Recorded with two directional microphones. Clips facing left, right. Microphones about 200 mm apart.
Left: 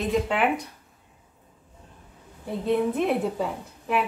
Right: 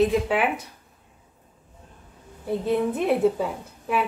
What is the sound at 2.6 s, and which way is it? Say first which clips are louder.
A woman's voice: even; centre (ahead or behind).